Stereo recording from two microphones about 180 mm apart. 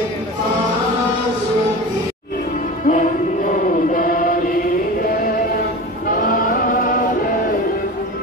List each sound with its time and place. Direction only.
2.9 s chant: 45° left (ahead or behind)
6.0 s music: 50° left (ahead or behind)